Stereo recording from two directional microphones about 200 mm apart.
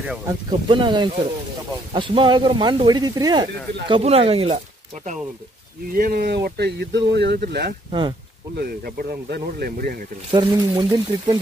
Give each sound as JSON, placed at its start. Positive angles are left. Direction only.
{"t": 0.3, "sound": "speech", "side_deg": -25}
{"t": 5.9, "sound": "speech", "side_deg": -45}
{"t": 10.3, "sound": "speech", "side_deg": -20}